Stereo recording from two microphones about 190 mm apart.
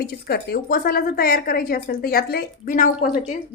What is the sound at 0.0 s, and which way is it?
A woman's voice, 55° left (ahead or behind).